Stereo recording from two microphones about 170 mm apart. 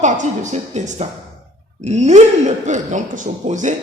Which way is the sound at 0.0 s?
45° right (ahead or behind).